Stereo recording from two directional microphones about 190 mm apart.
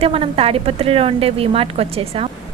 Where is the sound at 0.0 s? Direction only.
30° right (ahead or behind).